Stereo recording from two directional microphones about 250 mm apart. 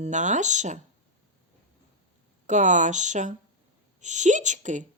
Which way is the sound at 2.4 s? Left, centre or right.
Right.